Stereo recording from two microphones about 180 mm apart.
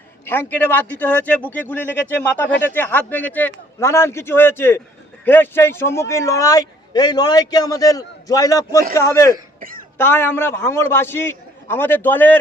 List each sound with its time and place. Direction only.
0.3 s a man's voice: 10° left (ahead or behind)